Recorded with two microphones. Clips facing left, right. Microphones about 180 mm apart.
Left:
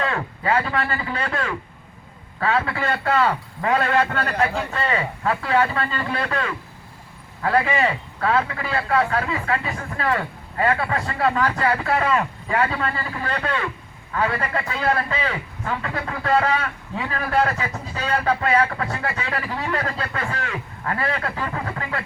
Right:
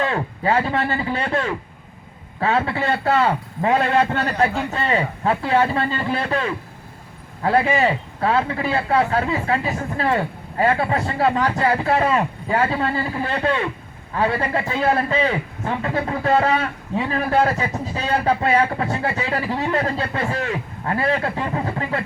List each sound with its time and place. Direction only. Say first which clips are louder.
0.0 s a man's voice: right 3 dB; 25° right (ahead or behind)